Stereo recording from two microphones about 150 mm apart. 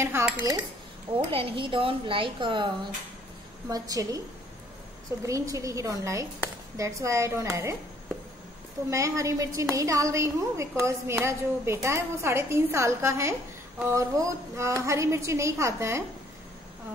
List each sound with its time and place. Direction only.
0.0 s speech: 20° right (ahead or behind)
1.3 s a woman's voice: 35° right (ahead or behind)
5.2 s a woman's voice: 20° right (ahead or behind)
8.9 s a woman's voice: 20° right (ahead or behind)